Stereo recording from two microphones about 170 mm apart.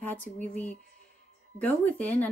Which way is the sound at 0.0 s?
10° left (ahead or behind).